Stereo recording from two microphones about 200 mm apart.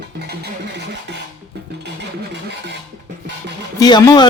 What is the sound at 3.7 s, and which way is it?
Speech, 20° left (ahead or behind).